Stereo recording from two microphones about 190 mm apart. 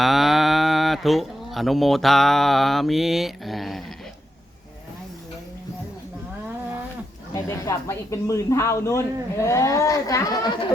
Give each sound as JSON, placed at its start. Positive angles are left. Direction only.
{"t": 0.0, "sound": "speech", "side_deg": 0}
{"t": 7.3, "sound": "speech", "side_deg": 15}